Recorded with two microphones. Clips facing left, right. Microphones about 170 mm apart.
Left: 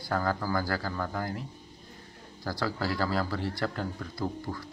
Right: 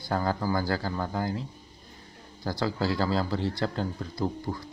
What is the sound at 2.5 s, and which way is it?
Speech, 25° right (ahead or behind).